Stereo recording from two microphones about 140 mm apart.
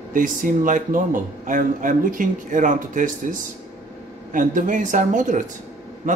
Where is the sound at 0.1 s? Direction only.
75° right (ahead or behind).